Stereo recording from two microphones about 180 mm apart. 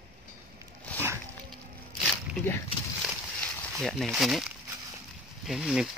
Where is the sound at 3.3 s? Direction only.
5° left (ahead or behind).